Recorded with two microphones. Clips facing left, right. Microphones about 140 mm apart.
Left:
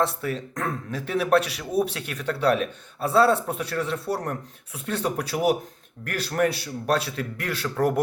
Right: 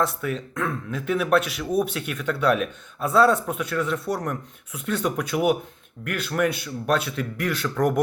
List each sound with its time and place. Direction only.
0.0 s a man's voice: 35° left (ahead or behind)